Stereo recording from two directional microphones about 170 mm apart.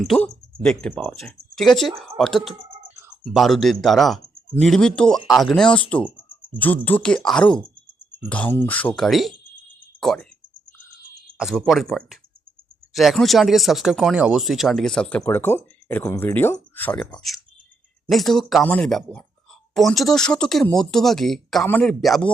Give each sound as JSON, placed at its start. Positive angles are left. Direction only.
{"t": 0.0, "sound": "speech", "side_deg": 5}
{"t": 11.3, "sound": "speech", "side_deg": 0}